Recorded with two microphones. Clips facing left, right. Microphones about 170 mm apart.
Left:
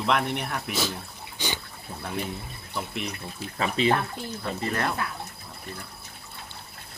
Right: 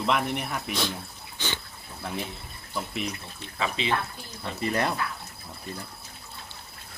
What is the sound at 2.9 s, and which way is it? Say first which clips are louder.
Speech: even; centre (ahead or behind).